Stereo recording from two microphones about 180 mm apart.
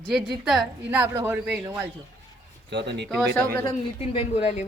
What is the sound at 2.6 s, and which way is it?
Speech, 65° right (ahead or behind).